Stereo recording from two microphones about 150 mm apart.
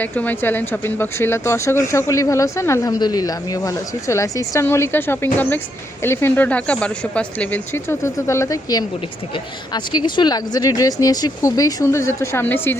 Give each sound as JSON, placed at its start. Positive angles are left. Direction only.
{"t": 0.0, "sound": "a woman's voice", "side_deg": 10}